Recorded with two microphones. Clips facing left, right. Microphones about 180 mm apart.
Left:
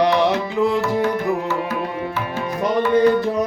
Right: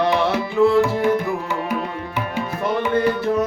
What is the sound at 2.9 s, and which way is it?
Tabla, 15° left (ahead or behind).